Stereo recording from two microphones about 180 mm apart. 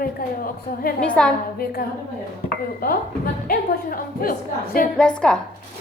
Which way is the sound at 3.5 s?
55° left (ahead or behind).